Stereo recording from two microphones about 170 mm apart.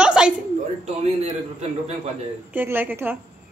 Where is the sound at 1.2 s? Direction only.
40° right (ahead or behind).